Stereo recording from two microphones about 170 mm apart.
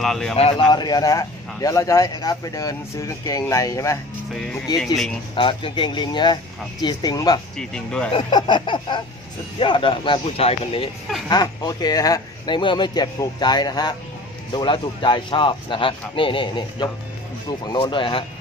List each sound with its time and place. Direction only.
0.0 s speech: 5° left (ahead or behind)
0.4 s a man's voice: 30° left (ahead or behind)
4.3 s speech: 5° left (ahead or behind)
5.3 s a man's voice: 30° left (ahead or behind)
7.5 s speech: 5° left (ahead or behind)
8.1 s a man's voice: 25° left (ahead or behind)